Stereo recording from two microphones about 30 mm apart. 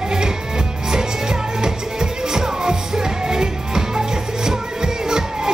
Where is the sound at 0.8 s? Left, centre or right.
Right.